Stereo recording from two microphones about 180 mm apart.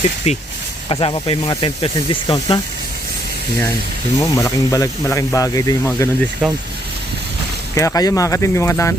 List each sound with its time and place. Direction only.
0.3 s speech: 40° left (ahead or behind)
4.2 s speech: 15° left (ahead or behind)
6.4 s speech: centre (ahead or behind)
7.8 s speech: 20° left (ahead or behind)